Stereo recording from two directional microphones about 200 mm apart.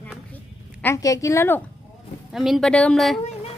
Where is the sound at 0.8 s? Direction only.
15° left (ahead or behind).